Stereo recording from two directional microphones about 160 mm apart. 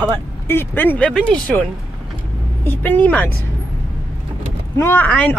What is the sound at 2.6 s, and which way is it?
Speech, 10° left (ahead or behind).